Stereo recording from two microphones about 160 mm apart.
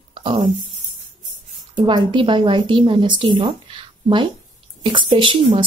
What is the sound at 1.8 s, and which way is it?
A woman's voice, 30° right (ahead or behind).